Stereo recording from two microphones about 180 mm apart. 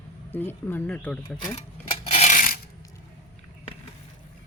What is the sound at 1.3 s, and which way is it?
Coin, 30° left (ahead or behind).